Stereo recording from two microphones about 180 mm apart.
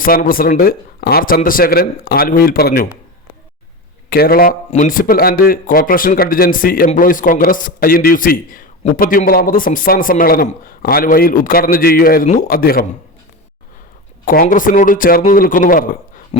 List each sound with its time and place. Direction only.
0.0 s speech: 50° left (ahead or behind)
4.1 s speech: 55° left (ahead or behind)
14.3 s speech: 50° left (ahead or behind)